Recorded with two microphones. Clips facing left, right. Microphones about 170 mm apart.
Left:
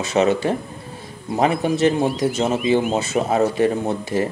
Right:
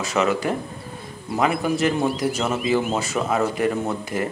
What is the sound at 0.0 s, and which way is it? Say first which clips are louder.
Speech: left 4 dB; 25° left (ahead or behind).